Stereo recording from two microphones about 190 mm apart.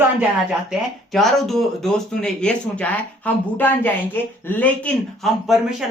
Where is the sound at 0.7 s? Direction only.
Centre (ahead or behind).